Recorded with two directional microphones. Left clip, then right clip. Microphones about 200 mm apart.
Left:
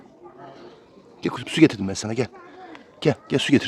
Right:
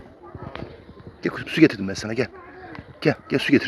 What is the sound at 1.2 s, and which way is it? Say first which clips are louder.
A man's voice: even; 25° left (ahead or behind).